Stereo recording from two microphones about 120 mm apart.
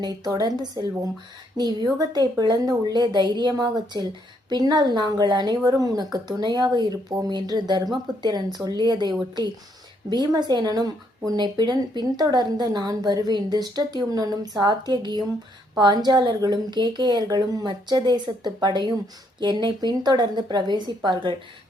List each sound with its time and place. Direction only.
0.0 s speech: 30° right (ahead or behind)